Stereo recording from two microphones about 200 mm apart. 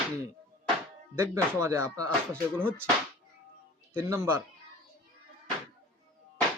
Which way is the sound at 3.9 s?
15° right (ahead or behind).